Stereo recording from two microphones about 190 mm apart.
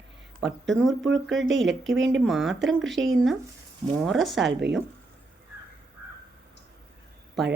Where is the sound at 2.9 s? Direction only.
75° right (ahead or behind).